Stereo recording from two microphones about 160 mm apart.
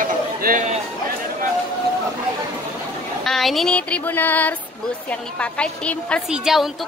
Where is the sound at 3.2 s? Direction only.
Centre (ahead or behind).